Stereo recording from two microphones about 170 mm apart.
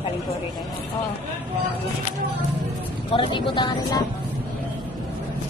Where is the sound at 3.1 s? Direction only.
30° left (ahead or behind).